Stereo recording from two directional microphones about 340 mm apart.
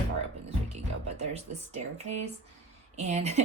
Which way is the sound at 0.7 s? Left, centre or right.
Centre.